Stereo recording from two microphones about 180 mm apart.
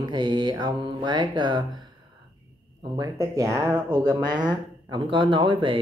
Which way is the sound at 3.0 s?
15° right (ahead or behind).